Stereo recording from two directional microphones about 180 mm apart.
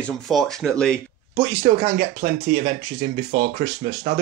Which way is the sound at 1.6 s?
35° right (ahead or behind).